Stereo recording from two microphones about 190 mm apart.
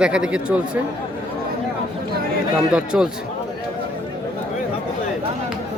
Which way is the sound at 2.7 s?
5° right (ahead or behind).